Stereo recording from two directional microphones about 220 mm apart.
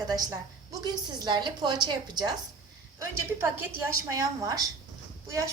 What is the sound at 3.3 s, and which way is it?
A woman's voice, 10° right (ahead or behind).